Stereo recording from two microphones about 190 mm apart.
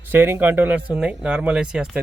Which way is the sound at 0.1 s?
10° right (ahead or behind).